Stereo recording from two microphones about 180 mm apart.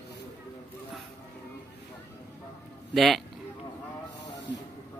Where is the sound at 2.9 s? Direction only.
Centre (ahead or behind).